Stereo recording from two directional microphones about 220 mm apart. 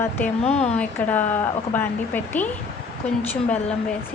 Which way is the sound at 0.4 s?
30° left (ahead or behind).